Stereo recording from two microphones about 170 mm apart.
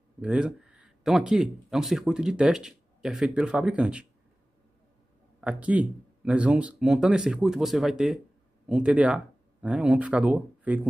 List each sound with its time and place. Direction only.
0.2 s speech: 5° right (ahead or behind)
5.4 s speech: 5° right (ahead or behind)